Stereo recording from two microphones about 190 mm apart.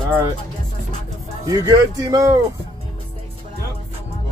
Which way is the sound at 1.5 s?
20° right (ahead or behind).